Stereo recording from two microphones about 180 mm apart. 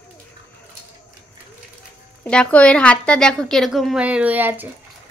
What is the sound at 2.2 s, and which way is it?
A woman's voice, 5° left (ahead or behind).